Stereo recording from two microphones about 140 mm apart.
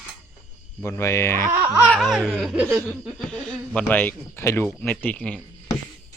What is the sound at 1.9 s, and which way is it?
Laughter, centre (ahead or behind).